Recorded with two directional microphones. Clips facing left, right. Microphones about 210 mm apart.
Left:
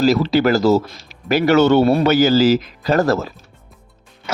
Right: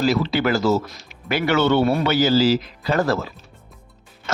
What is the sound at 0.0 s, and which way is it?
Speech, 40° left (ahead or behind).